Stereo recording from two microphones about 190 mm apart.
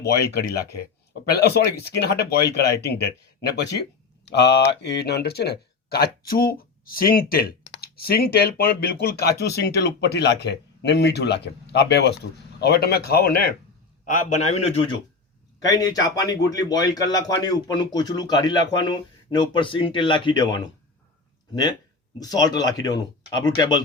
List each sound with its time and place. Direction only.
0.0 s speech: 60° left (ahead or behind)
14.0 s a man's voice: 40° left (ahead or behind)
15.6 s speech: 20° left (ahead or behind)